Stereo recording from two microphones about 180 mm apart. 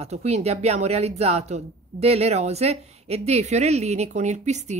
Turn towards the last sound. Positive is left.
turn(degrees=-40)  # may be behind; listen again after turning